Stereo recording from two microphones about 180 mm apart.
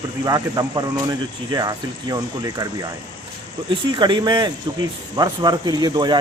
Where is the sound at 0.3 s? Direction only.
20° right (ahead or behind).